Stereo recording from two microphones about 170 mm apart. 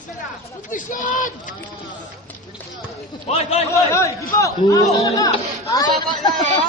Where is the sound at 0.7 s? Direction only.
50° left (ahead or behind).